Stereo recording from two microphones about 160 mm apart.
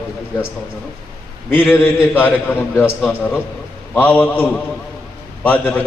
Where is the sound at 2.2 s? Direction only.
10° left (ahead or behind).